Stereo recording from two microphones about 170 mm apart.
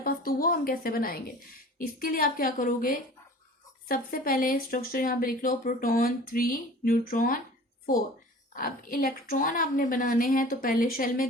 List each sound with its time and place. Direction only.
0.0 s a sound: 60° left (ahead or behind)
1.8 s speech: 55° left (ahead or behind)
8.5 s speech: 55° left (ahead or behind)